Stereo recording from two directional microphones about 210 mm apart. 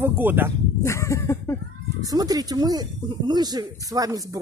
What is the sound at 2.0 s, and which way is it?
Speech, 15° right (ahead or behind).